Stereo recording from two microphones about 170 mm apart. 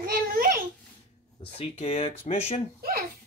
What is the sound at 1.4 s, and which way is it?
Speech, 35° left (ahead or behind).